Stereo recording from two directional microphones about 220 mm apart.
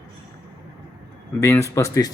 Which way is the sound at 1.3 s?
15° left (ahead or behind).